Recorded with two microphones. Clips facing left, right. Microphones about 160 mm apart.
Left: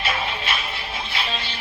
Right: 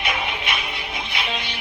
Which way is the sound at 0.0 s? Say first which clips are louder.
Even; 15° right (ahead or behind).